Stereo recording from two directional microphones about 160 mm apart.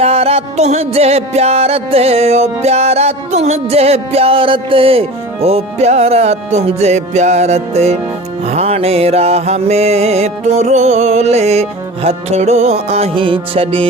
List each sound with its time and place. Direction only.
0.0 s music: 40° right (ahead or behind)